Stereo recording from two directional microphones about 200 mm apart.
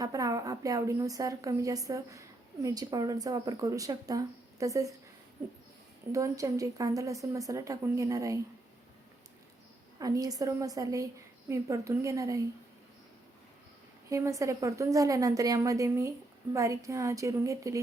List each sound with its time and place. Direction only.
0.0 s a woman's voice: 15° right (ahead or behind)
6.1 s a woman's voice: 15° right (ahead or behind)
10.0 s a woman's voice: 15° right (ahead or behind)
14.1 s a woman's voice: 15° right (ahead or behind)